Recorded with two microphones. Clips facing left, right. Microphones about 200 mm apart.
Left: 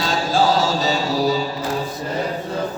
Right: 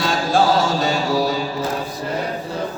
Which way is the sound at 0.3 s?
50° right (ahead or behind).